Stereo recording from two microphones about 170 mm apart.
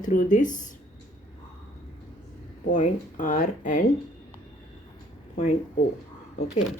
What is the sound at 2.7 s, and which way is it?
Speech, 50° left (ahead or behind).